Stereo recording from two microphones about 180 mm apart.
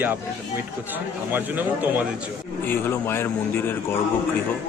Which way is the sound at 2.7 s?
15° left (ahead or behind).